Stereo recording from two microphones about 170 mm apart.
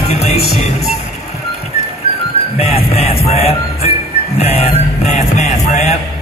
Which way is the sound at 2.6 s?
35° left (ahead or behind).